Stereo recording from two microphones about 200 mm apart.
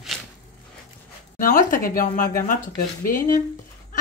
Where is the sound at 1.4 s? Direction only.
40° left (ahead or behind).